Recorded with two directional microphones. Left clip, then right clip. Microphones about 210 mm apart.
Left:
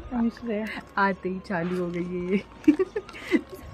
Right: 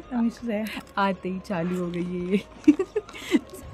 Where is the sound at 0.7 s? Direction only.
10° right (ahead or behind).